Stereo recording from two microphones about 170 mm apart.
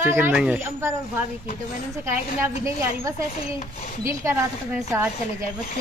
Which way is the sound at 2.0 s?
15° right (ahead or behind).